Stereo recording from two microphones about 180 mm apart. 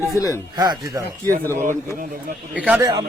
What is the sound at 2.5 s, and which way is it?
Speech, 10° right (ahead or behind).